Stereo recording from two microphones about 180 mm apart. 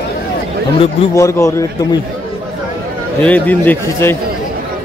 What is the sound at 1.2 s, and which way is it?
Speech, 15° left (ahead or behind).